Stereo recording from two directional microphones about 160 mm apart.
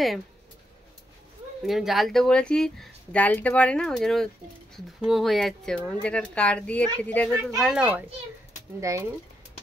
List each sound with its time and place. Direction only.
1.7 s speech: centre (ahead or behind)
8.9 s speech: 20° right (ahead or behind)